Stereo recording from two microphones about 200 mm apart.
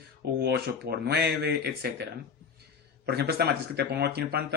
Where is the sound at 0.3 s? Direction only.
50° right (ahead or behind).